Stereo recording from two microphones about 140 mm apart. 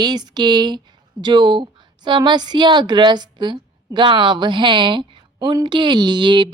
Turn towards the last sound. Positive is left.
turn(degrees=-35)  # may be behind; listen again after turning